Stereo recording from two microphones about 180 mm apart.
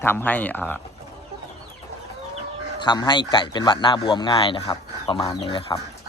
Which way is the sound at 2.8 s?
25° left (ahead or behind).